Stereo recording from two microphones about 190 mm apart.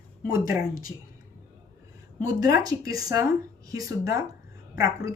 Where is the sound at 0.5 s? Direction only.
45° left (ahead or behind).